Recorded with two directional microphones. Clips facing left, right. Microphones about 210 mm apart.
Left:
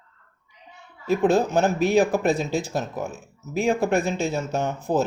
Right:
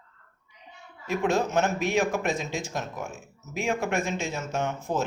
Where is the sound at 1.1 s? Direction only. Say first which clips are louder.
Left 6 dB; 35° left (ahead or behind).